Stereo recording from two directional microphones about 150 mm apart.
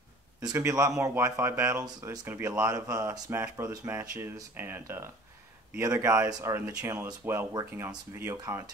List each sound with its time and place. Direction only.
0.4 s speech: 25° right (ahead or behind)